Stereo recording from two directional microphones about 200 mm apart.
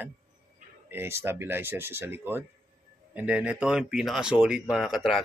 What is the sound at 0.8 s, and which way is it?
Speech, 10° right (ahead or behind).